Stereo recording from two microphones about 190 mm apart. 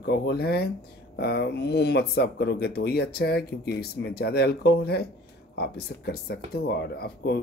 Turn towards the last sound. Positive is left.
turn(degrees=60)  # may be behind; listen again after turning